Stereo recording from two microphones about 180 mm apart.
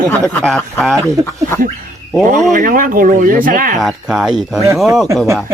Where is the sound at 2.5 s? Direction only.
50° right (ahead or behind).